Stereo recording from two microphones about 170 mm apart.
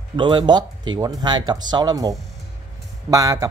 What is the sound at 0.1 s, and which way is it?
Speech, 25° right (ahead or behind).